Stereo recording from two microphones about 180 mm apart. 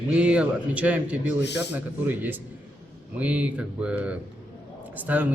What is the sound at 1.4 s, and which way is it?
Speech, 70° left (ahead or behind).